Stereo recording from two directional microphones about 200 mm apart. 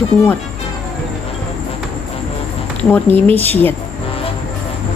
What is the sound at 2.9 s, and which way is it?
Speech, 10° left (ahead or behind).